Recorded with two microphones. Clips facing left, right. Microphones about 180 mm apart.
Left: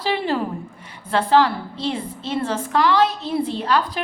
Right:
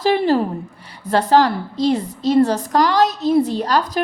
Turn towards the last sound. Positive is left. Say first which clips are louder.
# right 3 dB
turn(degrees=-40)  # may be behind; listen again after turning